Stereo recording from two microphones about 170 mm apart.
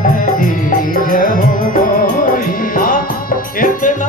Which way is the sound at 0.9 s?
55° left (ahead or behind).